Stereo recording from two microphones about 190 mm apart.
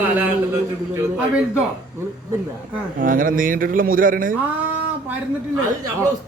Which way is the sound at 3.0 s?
45° right (ahead or behind).